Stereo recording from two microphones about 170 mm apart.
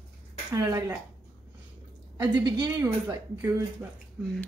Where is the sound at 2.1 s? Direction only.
25° right (ahead or behind).